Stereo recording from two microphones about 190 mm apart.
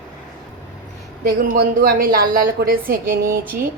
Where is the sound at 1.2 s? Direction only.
50° right (ahead or behind).